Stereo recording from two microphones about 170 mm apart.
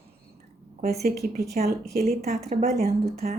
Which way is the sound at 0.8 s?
65° right (ahead or behind).